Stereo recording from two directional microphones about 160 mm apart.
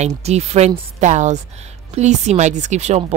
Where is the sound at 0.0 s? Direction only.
45° right (ahead or behind).